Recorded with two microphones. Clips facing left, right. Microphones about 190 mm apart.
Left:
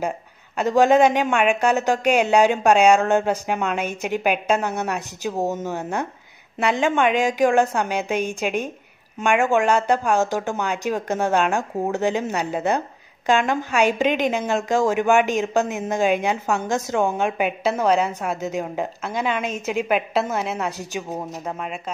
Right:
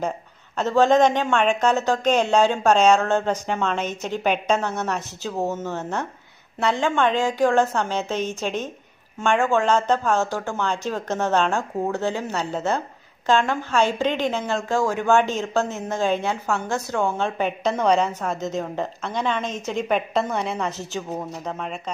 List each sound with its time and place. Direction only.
0.6 s speech: 10° left (ahead or behind)